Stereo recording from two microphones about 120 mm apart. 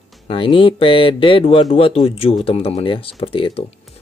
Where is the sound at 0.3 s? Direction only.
50° left (ahead or behind).